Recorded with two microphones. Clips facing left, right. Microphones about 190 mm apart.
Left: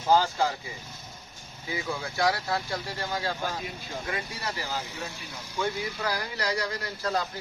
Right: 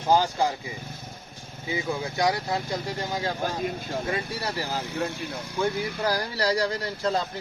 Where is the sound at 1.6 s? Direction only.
20° right (ahead or behind).